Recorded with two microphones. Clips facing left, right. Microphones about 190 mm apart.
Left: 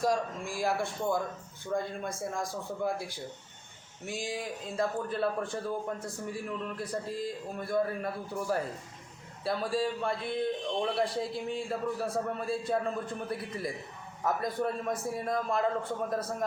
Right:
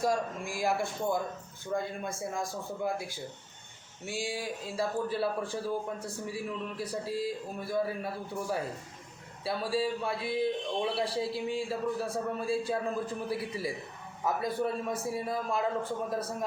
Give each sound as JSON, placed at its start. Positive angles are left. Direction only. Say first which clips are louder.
{"t": 0.0, "sound": "a man's voice", "louder": "even", "side_deg": 0}
{"t": 1.7, "sound": "speech", "louder": "left 1 dB", "side_deg": -15}
{"t": 2.3, "sound": "a man's voice", "louder": "even", "side_deg": 0}
{"t": 4.0, "sound": "speech", "louder": "right 1 dB", "side_deg": -30}
{"t": 4.4, "sound": "a man's voice", "louder": "left 1 dB", "side_deg": -5}